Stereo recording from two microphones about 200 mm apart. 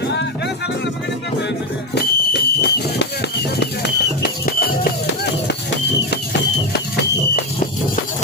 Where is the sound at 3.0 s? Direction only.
55° left (ahead or behind).